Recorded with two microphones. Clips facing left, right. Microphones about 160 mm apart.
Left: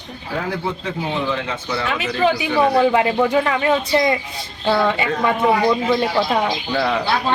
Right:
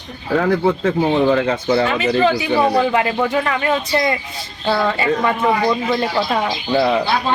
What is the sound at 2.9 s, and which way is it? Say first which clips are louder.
A woman's voice: left 1 dB; 20° left (ahead or behind).